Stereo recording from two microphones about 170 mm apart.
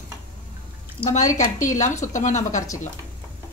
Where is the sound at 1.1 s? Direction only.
45° left (ahead or behind).